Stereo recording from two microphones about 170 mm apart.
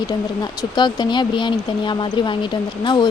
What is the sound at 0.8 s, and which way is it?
Speech, 25° left (ahead or behind).